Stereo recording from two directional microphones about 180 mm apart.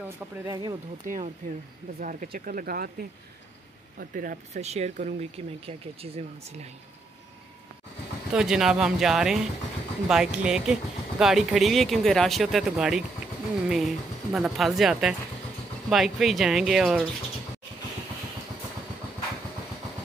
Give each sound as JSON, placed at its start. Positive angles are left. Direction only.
{"t": 0.5, "sound": "speech", "side_deg": -20}
{"t": 1.0, "sound": "speech", "side_deg": -45}
{"t": 8.3, "sound": "speech", "side_deg": -5}